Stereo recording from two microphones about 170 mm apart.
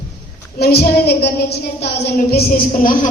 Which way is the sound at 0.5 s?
65° left (ahead or behind).